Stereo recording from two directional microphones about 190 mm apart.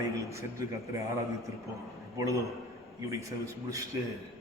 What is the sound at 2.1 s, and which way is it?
A man's voice, 15° right (ahead or behind).